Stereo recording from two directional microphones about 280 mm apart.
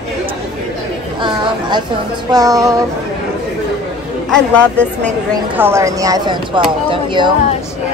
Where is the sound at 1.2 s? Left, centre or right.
Centre.